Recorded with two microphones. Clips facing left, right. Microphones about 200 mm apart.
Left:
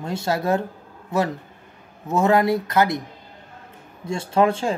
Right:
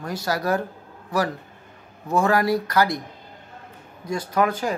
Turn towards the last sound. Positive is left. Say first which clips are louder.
# left 3 dB
turn(degrees=25)  # may be behind; listen again after turning